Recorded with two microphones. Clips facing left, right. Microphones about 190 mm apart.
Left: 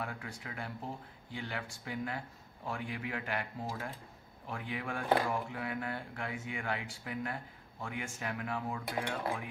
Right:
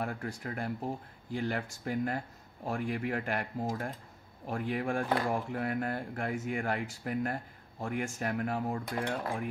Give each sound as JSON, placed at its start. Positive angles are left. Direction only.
{"t": 0.0, "sound": "speech", "side_deg": -45}